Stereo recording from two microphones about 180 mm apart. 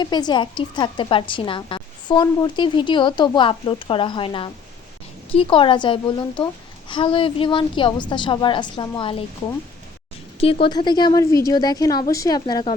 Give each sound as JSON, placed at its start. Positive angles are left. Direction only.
{"t": 0.0, "sound": "a woman's voice", "side_deg": 25}
{"t": 10.4, "sound": "a woman's voice", "side_deg": 30}